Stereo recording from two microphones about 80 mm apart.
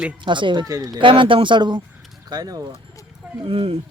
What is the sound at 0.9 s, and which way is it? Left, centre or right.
Speech, right.